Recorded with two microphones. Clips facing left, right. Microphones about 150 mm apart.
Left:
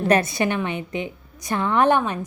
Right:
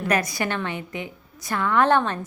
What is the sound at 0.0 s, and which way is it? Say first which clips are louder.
A woman's voice: left 5 dB; 30° left (ahead or behind).